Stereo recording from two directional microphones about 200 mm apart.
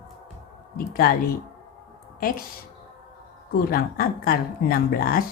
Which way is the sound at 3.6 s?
45° left (ahead or behind).